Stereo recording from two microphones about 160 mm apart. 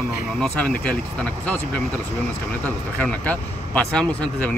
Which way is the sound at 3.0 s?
10° left (ahead or behind).